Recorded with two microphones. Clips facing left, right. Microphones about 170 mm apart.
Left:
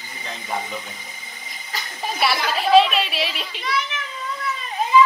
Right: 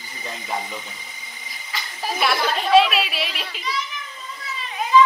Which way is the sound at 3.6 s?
65° left (ahead or behind).